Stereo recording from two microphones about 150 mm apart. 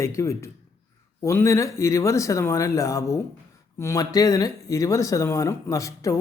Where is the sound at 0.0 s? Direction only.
20° left (ahead or behind).